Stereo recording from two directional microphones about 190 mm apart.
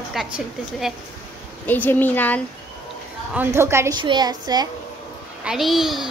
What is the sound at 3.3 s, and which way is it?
A woman's voice, 10° right (ahead or behind).